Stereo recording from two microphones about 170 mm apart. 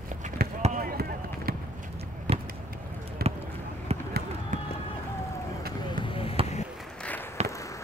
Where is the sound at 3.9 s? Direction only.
40° right (ahead or behind).